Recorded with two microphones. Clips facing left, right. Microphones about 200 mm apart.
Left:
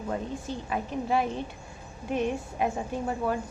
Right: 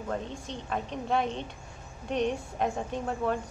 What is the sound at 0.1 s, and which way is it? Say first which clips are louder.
A woman's voice: left 2 dB; 5° left (ahead or behind).